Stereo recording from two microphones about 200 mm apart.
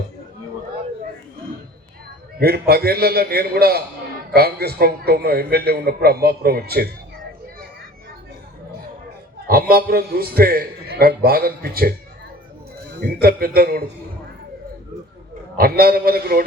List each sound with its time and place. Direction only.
2.4 s a man's voice: 50° right (ahead or behind)
9.5 s a man's voice: 50° right (ahead or behind)
13.0 s a man's voice: 50° right (ahead or behind)
15.5 s a man's voice: 50° right (ahead or behind)